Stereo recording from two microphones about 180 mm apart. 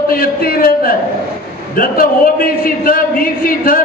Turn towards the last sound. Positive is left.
turn(degrees=50)  # may be behind; listen again after turning